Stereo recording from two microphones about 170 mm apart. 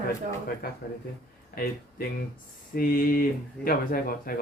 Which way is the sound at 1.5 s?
60° left (ahead or behind).